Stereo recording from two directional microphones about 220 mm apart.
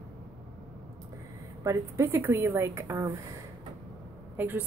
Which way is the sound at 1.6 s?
15° right (ahead or behind).